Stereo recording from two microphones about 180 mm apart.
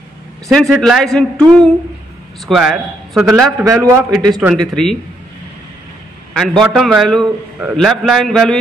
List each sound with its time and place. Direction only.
0.5 s speech: centre (ahead or behind)
3.6 s a man's voice: 15° right (ahead or behind)
6.3 s speech: centre (ahead or behind)